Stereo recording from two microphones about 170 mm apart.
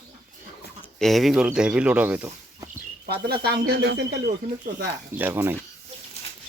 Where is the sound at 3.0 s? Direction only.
70° right (ahead or behind).